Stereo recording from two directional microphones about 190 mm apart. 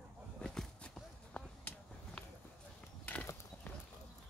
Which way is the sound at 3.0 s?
10° left (ahead or behind).